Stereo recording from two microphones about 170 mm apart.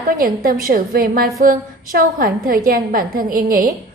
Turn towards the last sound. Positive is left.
turn(degrees=-60)  # may be behind; listen again after turning